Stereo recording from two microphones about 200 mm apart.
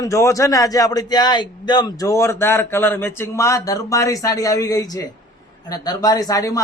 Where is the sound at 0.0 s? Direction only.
15° left (ahead or behind).